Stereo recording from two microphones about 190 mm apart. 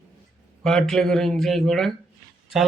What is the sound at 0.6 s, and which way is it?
A man's voice, centre (ahead or behind).